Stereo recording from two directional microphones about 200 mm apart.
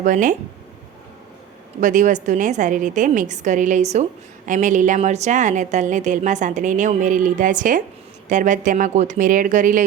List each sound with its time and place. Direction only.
0.0 s a woman's voice: 40° right (ahead or behind)
1.8 s a woman's voice: 40° right (ahead or behind)